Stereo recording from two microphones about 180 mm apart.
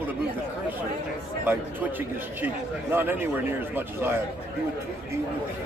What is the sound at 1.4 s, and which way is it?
Speech, 10° right (ahead or behind).